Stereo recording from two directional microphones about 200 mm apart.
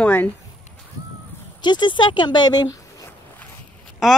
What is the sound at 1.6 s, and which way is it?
Speech, 20° left (ahead or behind).